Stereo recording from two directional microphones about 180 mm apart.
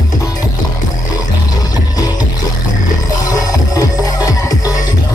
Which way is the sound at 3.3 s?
20° left (ahead or behind).